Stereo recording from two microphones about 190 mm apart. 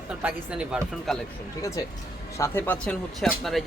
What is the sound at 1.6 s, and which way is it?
Speech, 15° left (ahead or behind).